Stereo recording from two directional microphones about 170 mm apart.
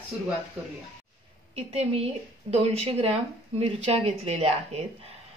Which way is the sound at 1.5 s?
35° right (ahead or behind).